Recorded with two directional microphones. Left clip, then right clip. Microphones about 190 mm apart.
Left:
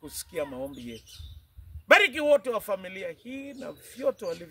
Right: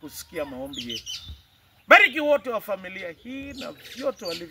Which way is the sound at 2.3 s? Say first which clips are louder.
Even; 30° left (ahead or behind).